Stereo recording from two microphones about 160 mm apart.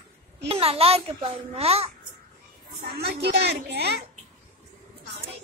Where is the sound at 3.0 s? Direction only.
90° right.